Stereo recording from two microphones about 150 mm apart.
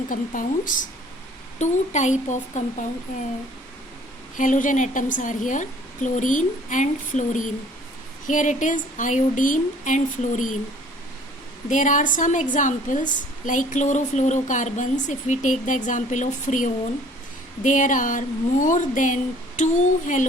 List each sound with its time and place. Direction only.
0.1 s a woman's voice: 65° left (ahead or behind)
1.5 s speech: 55° left (ahead or behind)
4.4 s a woman's voice: 60° left (ahead or behind)
11.7 s a woman's voice: 60° left (ahead or behind)